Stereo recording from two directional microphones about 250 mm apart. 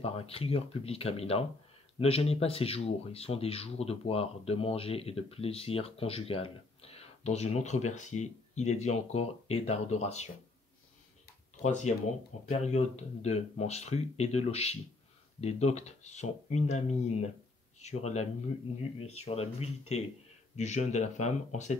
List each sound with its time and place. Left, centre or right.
0.0 s speech: left
11.6 s speech: left